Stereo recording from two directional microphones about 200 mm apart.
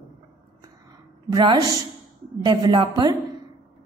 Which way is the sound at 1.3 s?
25° right (ahead or behind).